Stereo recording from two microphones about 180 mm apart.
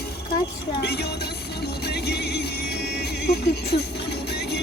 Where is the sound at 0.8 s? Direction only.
65° left (ahead or behind).